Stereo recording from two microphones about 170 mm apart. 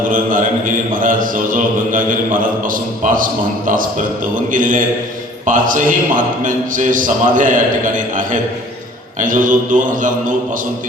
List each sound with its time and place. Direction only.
0.1 s a man's voice: 50° right (ahead or behind)